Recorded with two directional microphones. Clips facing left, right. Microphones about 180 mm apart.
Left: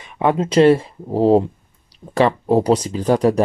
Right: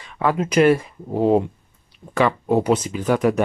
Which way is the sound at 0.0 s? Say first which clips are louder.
Left 3 dB; 20° left (ahead or behind).